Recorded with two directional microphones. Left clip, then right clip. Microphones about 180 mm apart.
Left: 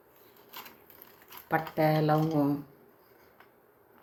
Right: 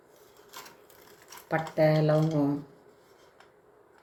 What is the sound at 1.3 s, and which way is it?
Speech, 15° left (ahead or behind).